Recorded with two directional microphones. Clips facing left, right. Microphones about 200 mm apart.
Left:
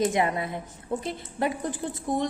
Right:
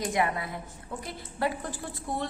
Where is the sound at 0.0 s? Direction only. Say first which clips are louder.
Left 4 dB; 25° left (ahead or behind).